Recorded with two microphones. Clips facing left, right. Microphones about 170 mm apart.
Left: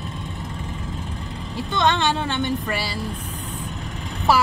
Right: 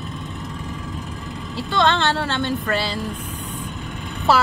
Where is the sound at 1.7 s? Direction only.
15° left (ahead or behind).